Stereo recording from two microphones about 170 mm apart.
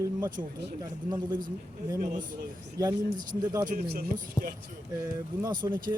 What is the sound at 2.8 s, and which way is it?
Speech, 20° right (ahead or behind).